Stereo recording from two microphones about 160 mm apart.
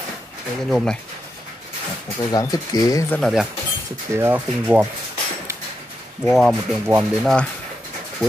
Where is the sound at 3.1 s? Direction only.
Centre (ahead or behind).